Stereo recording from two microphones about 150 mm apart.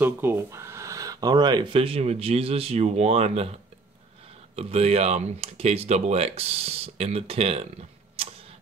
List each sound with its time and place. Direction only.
0.0 s speech: 15° right (ahead or behind); by 3.5 s 45° right (ahead or behind)
4.6 s speech: 40° right (ahead or behind)
8.2 s tick-tock: 40° right (ahead or behind)